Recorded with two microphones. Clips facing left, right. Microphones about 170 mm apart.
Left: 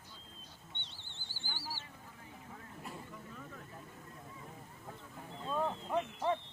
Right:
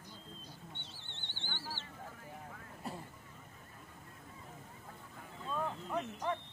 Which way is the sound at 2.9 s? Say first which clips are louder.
Right 4 dB; 35° right (ahead or behind).